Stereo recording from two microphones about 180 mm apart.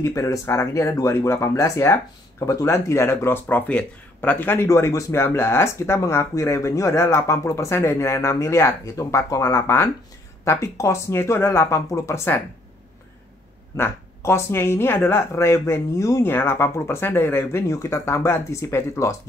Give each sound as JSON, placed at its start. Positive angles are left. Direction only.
{"t": 0.0, "sound": "speech", "side_deg": 15}
{"t": 13.7, "sound": "speech", "side_deg": 15}